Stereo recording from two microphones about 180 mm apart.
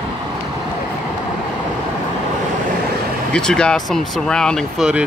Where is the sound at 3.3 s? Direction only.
5° left (ahead or behind).